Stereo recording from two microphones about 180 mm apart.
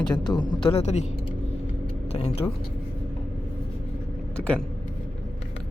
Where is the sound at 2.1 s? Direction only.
35° left (ahead or behind).